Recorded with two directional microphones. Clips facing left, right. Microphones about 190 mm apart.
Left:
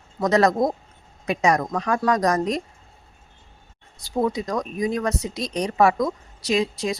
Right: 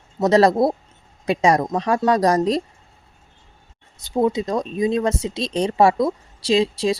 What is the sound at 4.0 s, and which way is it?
Speech, 20° right (ahead or behind).